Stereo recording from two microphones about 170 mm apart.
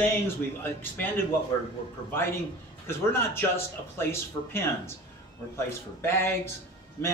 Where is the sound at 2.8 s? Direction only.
15° left (ahead or behind).